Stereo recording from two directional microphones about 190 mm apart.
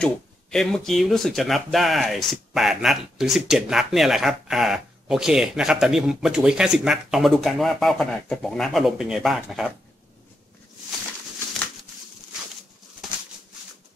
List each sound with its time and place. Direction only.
0.0 s speech: 5° left (ahead or behind)